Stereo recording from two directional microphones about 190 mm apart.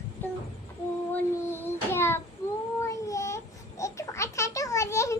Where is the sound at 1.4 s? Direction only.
10° left (ahead or behind).